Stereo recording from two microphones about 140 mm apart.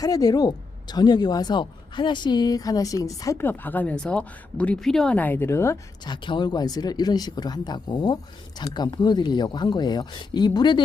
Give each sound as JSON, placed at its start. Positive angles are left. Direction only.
{"t": 0.0, "sound": "speech", "side_deg": 25}
{"t": 6.1, "sound": "speech", "side_deg": 35}